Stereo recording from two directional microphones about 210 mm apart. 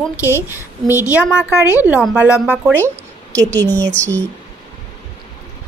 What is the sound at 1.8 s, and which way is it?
A woman's voice, 5° right (ahead or behind).